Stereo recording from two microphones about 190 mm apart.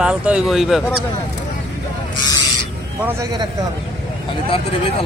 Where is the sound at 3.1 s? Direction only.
20° right (ahead or behind).